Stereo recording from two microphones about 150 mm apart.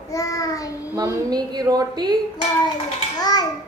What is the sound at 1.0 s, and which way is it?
A woman's voice, 25° right (ahead or behind).